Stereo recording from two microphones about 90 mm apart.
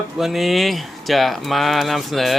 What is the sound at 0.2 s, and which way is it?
Speech, centre (ahead or behind).